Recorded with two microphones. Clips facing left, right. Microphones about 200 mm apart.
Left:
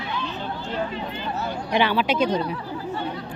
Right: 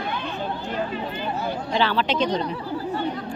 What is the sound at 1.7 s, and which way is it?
Speech, 15° left (ahead or behind).